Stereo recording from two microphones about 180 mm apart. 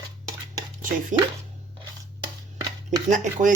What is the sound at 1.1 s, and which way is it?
Speech, 45° right (ahead or behind).